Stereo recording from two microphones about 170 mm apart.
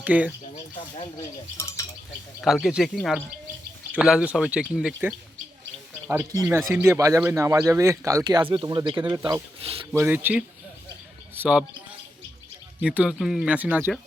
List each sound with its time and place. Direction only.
0.0 s speech: 10° right (ahead or behind)
0.5 s bird: 35° left (ahead or behind)
1.5 s a sound: 15° left (ahead or behind)
2.4 s a man's voice: centre (ahead or behind); by 9.4 s 25° right (ahead or behind)
9.9 s speech: 10° right (ahead or behind)
12.8 s speech: 10° right (ahead or behind)